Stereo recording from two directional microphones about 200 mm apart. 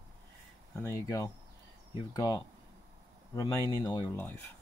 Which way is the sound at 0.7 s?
15° left (ahead or behind).